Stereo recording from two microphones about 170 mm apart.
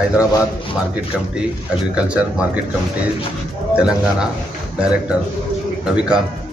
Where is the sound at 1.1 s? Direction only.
5° right (ahead or behind).